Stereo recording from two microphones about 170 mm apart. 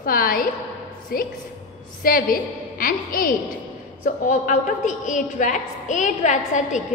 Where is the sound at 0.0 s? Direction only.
55° left (ahead or behind).